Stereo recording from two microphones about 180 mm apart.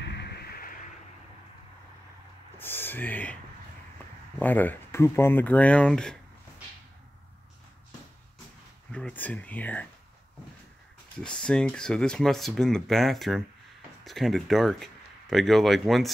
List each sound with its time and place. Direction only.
0.0 s a sound: 70° left (ahead or behind)
2.5 s speech: 10° left (ahead or behind)
4.4 s speech: 10° left (ahead or behind)
8.9 s speech: 10° left (ahead or behind)
11.1 s speech: 5° left (ahead or behind)